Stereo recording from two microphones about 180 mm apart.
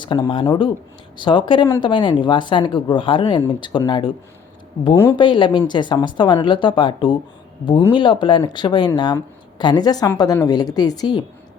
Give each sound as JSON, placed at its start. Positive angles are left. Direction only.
{"t": 0.1, "sound": "speech", "side_deg": 25}
{"t": 5.1, "sound": "speech", "side_deg": 25}